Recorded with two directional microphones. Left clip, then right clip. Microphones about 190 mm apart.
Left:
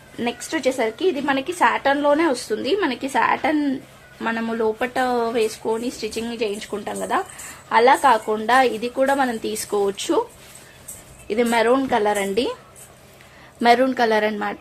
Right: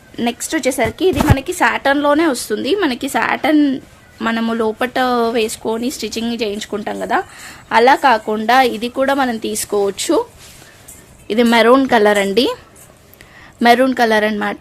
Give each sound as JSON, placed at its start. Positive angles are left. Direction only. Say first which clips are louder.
{"t": 0.2, "sound": "a woman's voice", "louder": "right 5 dB", "side_deg": -45}
{"t": 11.3, "sound": "a woman's voice", "louder": "right 7 dB", "side_deg": -55}
{"t": 13.6, "sound": "a woman's voice", "louder": "right 5 dB", "side_deg": -40}